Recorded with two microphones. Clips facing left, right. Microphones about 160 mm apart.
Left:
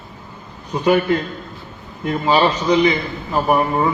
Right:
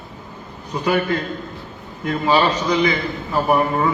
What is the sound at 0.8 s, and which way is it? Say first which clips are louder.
A man's voice: left 4 dB; 25° left (ahead or behind).